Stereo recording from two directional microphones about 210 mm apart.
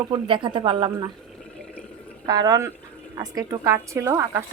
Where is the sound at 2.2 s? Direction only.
20° right (ahead or behind).